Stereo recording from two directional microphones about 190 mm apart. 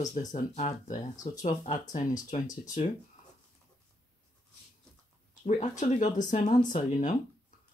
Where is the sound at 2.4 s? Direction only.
20° left (ahead or behind).